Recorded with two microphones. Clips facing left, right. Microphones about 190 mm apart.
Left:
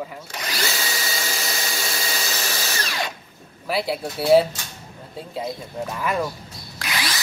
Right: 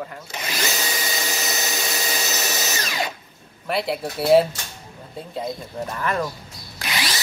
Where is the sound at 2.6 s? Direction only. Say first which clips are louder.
Right 1 dB; 5° right (ahead or behind).